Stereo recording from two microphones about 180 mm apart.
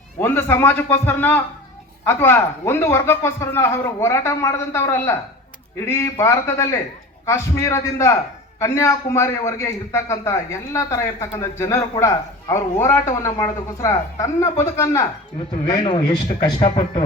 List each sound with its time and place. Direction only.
0.2 s a man's voice: 10° left (ahead or behind); by 17.0 s 30° left (ahead or behind)